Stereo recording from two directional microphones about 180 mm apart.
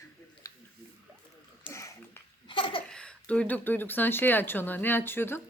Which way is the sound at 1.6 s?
15° left (ahead or behind).